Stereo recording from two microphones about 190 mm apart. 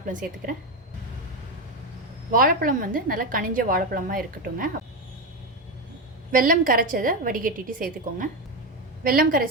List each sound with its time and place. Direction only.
0.1 s a woman's voice: 45° right (ahead or behind)
2.3 s a woman's voice: 45° right (ahead or behind)
6.3 s a woman's voice: 45° right (ahead or behind)